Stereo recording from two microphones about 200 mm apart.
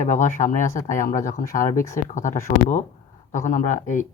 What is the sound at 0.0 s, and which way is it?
Speech, 35° left (ahead or behind).